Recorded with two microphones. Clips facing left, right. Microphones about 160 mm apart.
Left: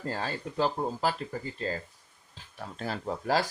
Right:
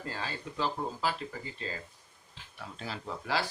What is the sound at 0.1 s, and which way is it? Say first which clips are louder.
Speech: left 5 dB; 45° left (ahead or behind).